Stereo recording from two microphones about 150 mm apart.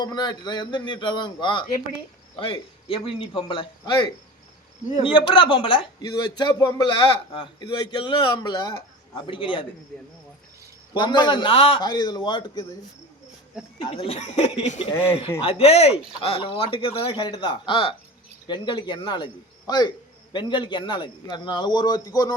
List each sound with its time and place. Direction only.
0.0 s a man's voice: 30° left (ahead or behind)
10.9 s a man's voice: 30° left (ahead or behind)
13.9 s a man's voice: 40° left (ahead or behind); by 22.4 s 25° left (ahead or behind)